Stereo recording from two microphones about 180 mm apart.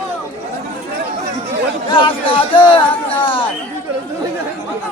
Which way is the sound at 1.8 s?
30° left (ahead or behind).